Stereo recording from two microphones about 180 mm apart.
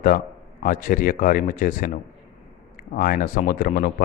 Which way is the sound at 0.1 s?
50° left (ahead or behind).